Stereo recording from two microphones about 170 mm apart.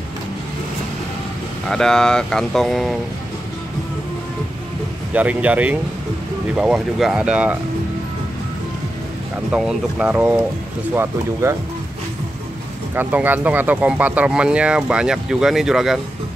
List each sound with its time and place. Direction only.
1.7 s speech: 5° left (ahead or behind)
5.1 s speech: 10° right (ahead or behind)
9.5 s speech: 5° right (ahead or behind)
11.4 s speech: 15° right (ahead or behind)
12.9 s speech: 10° right (ahead or behind)